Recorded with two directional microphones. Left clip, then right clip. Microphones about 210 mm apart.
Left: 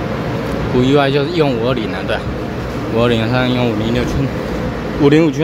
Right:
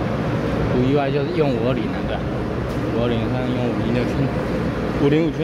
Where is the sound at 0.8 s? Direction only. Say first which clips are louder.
Left 10 dB; 20° left (ahead or behind).